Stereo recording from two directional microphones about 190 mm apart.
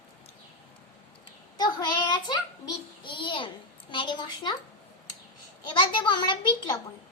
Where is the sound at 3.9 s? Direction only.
25° left (ahead or behind).